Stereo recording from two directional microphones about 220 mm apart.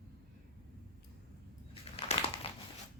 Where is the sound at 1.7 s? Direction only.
25° left (ahead or behind).